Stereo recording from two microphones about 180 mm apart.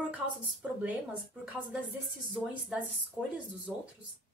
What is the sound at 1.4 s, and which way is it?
A woman's voice, 5° right (ahead or behind).